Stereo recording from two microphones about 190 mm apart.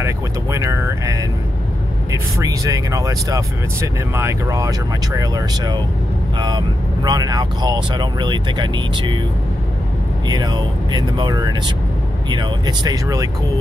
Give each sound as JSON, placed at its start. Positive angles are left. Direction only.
{"t": 0.0, "sound": "speech", "side_deg": -15}
{"t": 2.3, "sound": "speech", "side_deg": -15}
{"t": 10.2, "sound": "speech", "side_deg": -20}